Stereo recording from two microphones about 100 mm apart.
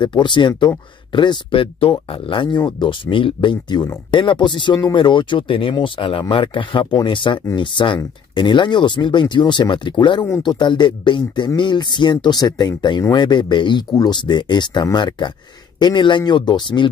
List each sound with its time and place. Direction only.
0.0 s speech: 50° left (ahead or behind)